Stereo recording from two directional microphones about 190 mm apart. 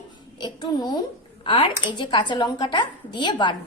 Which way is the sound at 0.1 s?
25° left (ahead or behind).